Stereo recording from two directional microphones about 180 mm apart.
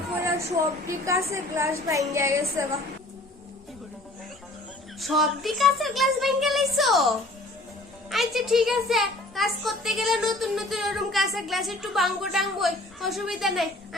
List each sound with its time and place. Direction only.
0.9 s a woman's voice: 15° right (ahead or behind)
4.9 s a child's voice: centre (ahead or behind)
8.1 s a child's voice: centre (ahead or behind)